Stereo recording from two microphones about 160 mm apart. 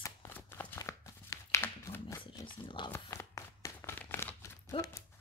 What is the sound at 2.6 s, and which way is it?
Speech, 30° left (ahead or behind).